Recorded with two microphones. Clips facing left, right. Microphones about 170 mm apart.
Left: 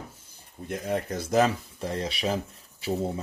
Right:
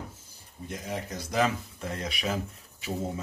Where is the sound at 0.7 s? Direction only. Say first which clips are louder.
Left 6 dB; 55° left (ahead or behind).